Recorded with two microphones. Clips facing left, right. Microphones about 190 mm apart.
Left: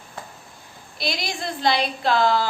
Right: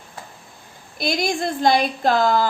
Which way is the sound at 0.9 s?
50° right (ahead or behind).